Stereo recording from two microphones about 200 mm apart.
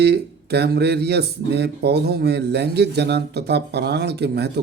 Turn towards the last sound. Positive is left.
turn(degrees=-55)  # may be behind; listen again after turning